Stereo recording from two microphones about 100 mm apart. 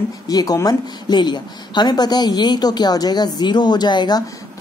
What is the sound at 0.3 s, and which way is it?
A woman's voice, 40° left (ahead or behind).